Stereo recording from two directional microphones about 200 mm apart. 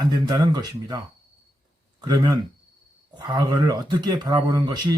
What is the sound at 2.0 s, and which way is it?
Speech, 20° right (ahead or behind).